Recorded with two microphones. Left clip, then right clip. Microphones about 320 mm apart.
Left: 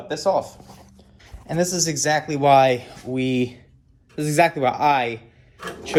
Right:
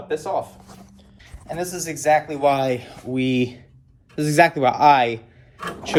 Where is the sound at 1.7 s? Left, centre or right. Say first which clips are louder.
Right 6 dB; centre.